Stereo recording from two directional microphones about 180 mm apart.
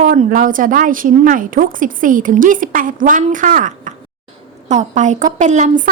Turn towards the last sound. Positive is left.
turn(degrees=-45)  # may be behind; listen again after turning